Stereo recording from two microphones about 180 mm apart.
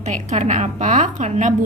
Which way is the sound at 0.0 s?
40° right (ahead or behind).